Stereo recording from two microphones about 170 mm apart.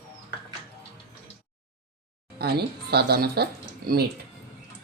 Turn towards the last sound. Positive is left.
turn(degrees=-70)  # may be behind; listen again after turning